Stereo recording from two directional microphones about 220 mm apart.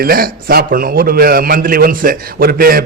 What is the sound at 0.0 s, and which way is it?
A man's voice, 40° right (ahead or behind).